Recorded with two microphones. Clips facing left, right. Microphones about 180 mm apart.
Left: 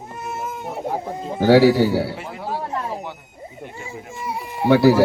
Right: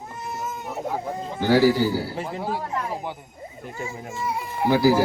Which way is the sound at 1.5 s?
70° left (ahead or behind).